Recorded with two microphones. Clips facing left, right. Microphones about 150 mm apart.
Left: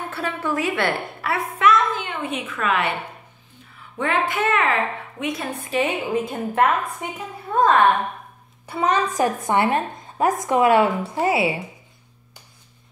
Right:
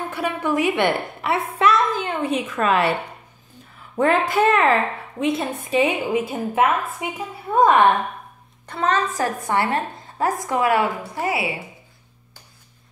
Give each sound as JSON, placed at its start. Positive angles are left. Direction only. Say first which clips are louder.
{"t": 0.1, "sound": "a woman's voice", "louder": "right 3 dB", "side_deg": -15}
{"t": 1.6, "sound": "a sound", "louder": "left 1 dB", "side_deg": -35}
{"t": 3.9, "sound": "a woman's voice", "louder": "right 4 dB", "side_deg": -40}
{"t": 6.1, "sound": "a woman's voice", "louder": "right 1 dB", "side_deg": -5}
{"t": 8.6, "sound": "a woman's voice", "louder": "left 1 dB", "side_deg": 10}